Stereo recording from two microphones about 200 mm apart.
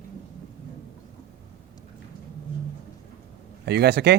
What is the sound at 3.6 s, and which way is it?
Speech, 55° right (ahead or behind).